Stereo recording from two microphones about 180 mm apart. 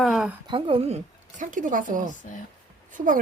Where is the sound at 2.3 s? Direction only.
45° left (ahead or behind).